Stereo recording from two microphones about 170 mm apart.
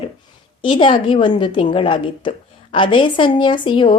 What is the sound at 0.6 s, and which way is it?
A woman's voice, 30° left (ahead or behind).